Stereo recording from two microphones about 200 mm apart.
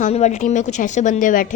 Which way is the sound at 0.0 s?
35° left (ahead or behind).